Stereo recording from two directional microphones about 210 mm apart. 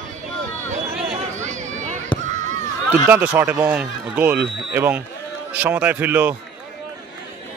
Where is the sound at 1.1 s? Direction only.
35° right (ahead or behind).